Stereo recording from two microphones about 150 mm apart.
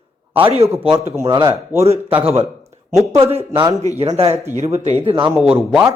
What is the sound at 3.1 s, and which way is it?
Speech, 45° right (ahead or behind).